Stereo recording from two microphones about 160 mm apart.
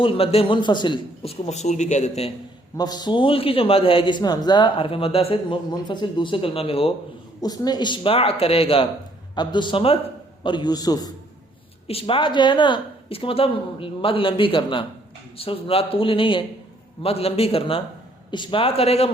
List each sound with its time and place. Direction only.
0.0 s a man's voice: 35° left (ahead or behind)
2.7 s a man's voice: 25° left (ahead or behind)
7.4 s a man's voice: 25° left (ahead or behind)
11.9 s a man's voice: 35° left (ahead or behind)